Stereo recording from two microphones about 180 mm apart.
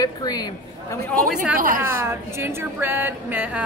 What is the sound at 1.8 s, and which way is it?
A woman's voice, 15° right (ahead or behind).